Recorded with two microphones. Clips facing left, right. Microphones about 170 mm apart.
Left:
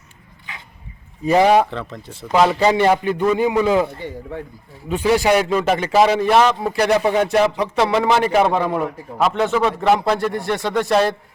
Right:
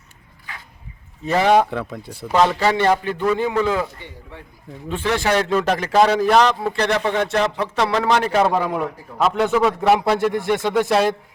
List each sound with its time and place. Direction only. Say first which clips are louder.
1.2 s a man's voice: left 5 dB; 15° left (ahead or behind)
1.7 s speech: right 2 dB; 10° right (ahead or behind)
2.3 s a man's voice: left 2 dB; 10° left (ahead or behind)
4.0 s a man's voice: left 10 dB; 50° left (ahead or behind)
4.9 s a man's voice: left 4 dB; 15° left (ahead or behind); by 11.1 s 5° right (ahead or behind)